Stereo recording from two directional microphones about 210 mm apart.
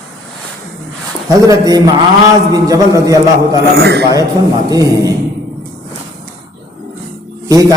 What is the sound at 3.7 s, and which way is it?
Speech, 50° right (ahead or behind).